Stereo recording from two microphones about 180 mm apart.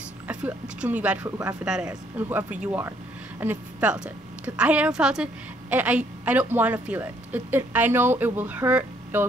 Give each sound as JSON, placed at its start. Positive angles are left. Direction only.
{"t": 0.3, "sound": "speech", "side_deg": -5}
{"t": 1.2, "sound": "speech", "side_deg": -20}
{"t": 1.6, "sound": "a woman's voice", "side_deg": -5}